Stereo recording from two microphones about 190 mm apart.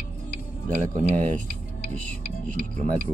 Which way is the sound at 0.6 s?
45° right (ahead or behind).